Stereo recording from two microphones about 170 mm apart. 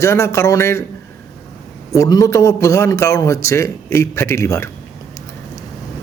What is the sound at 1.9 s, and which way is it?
A man's voice, 20° left (ahead or behind).